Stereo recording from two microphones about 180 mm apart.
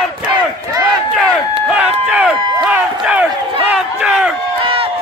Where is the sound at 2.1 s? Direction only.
5° right (ahead or behind).